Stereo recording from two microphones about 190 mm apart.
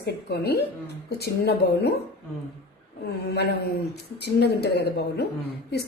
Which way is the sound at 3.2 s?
60° left (ahead or behind).